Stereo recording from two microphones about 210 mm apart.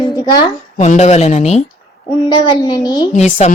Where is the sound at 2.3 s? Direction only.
20° left (ahead or behind).